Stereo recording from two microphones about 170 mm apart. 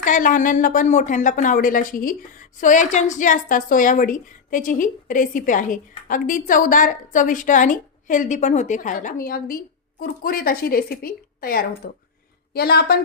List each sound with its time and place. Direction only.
0.0 s a woman's voice: 50° left (ahead or behind); by 13.0 s 65° left (ahead or behind)